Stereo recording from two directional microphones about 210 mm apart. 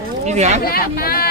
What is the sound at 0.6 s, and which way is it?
Speech, 45° left (ahead or behind).